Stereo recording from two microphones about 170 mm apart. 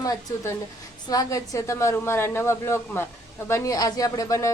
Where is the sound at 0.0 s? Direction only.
20° left (ahead or behind).